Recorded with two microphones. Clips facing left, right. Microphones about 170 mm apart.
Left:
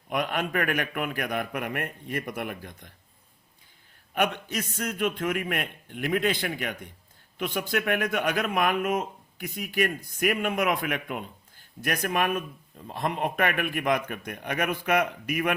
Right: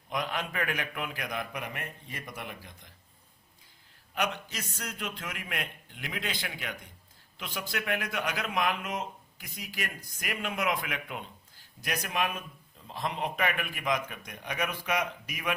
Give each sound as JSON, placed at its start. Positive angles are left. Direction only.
{"t": 0.1, "sound": "a man's voice", "side_deg": 55}
{"t": 4.1, "sound": "a man's voice", "side_deg": 55}